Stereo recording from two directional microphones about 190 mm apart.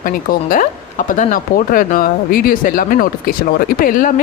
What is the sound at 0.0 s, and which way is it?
Speech, 45° left (ahead or behind).